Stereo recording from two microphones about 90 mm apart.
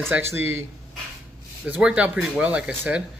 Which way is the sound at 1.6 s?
10° right (ahead or behind).